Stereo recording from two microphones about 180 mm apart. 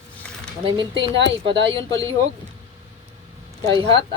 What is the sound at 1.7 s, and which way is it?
Speech, 15° left (ahead or behind).